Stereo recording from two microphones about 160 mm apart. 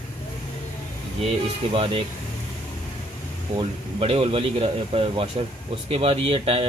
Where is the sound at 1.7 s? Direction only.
35° right (ahead or behind).